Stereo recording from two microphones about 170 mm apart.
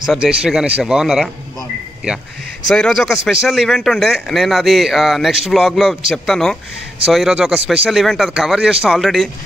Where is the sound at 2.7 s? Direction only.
5° left (ahead or behind).